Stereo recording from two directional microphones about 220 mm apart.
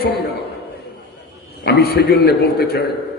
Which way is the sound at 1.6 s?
45° left (ahead or behind).